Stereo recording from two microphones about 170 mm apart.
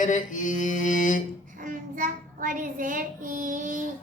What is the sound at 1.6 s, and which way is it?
Child singing, 50° right (ahead or behind).